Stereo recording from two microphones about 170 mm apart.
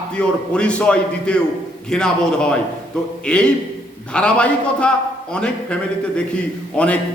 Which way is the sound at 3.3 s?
5° left (ahead or behind).